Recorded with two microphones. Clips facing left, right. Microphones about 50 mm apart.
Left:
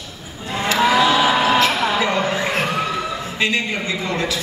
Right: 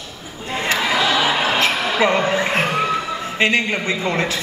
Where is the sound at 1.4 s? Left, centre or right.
Right.